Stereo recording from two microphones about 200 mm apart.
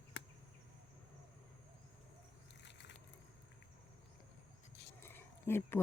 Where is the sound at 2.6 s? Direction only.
60° left (ahead or behind).